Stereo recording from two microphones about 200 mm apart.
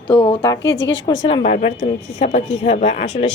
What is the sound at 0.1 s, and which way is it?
A woman's voice, 20° left (ahead or behind).